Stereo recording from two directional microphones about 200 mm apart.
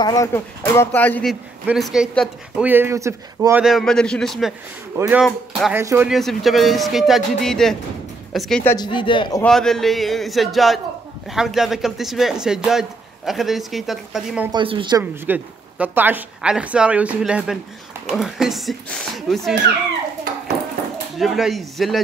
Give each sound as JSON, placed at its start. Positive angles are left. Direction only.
{"t": 0.0, "sound": "speech", "side_deg": 15}
{"t": 1.7, "sound": "speech", "side_deg": 0}
{"t": 3.6, "sound": "speech", "side_deg": 0}
{"t": 4.9, "sound": "speech", "side_deg": -15}
{"t": 5.2, "sound": "speech", "side_deg": 0}
{"t": 5.8, "sound": "speech", "side_deg": -10}
{"t": 6.1, "sound": "a woman's voice", "side_deg": 0}
{"t": 8.7, "sound": "speech", "side_deg": 25}
{"t": 9.4, "sound": "speech", "side_deg": 0}
{"t": 14.5, "sound": "speech", "side_deg": -25}
{"t": 15.2, "sound": "speech", "side_deg": -10}
{"t": 21.2, "sound": "speech", "side_deg": 0}